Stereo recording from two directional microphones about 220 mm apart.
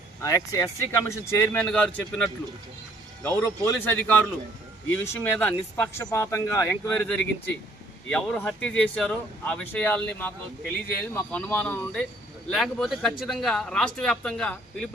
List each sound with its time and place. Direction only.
0.2 s speech: 15° left (ahead or behind)